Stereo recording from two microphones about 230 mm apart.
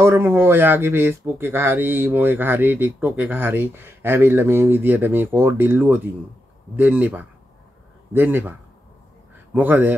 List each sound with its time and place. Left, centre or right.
0.0 s speech: centre